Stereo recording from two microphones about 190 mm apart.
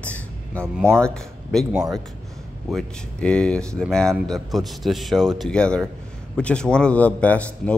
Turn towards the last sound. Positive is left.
turn(degrees=5)  # may be behind; listen again after turning